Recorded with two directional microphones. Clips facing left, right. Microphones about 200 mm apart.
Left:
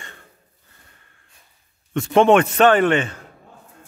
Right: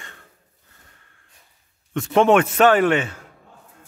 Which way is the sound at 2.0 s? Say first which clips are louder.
Left 2 dB; 5° right (ahead or behind).